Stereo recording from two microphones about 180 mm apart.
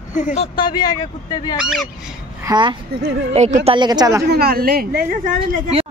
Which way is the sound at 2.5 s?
25° right (ahead or behind).